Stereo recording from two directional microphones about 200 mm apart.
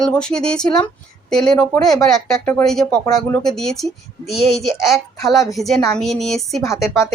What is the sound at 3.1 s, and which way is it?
Speech, 15° left (ahead or behind).